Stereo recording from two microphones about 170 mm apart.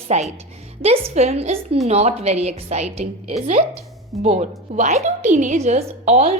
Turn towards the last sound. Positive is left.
turn(degrees=-40)  # may be behind; listen again after turning